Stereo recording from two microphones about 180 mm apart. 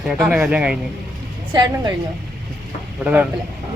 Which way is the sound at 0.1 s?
5° right (ahead or behind).